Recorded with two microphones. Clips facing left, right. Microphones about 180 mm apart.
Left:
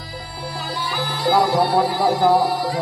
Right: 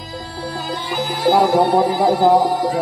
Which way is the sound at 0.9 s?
15° right (ahead or behind).